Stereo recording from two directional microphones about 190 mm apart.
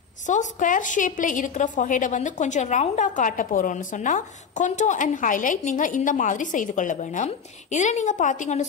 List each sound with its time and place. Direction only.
0.3 s a woman's voice: 40° left (ahead or behind)